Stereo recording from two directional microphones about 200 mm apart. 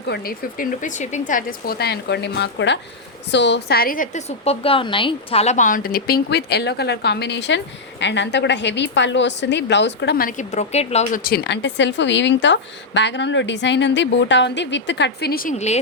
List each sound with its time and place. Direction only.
0.1 s a woman's voice: 50° left (ahead or behind); by 11.2 s 35° left (ahead or behind)
11.2 s a woman's voice: 55° left (ahead or behind); by 15.8 s 35° left (ahead or behind)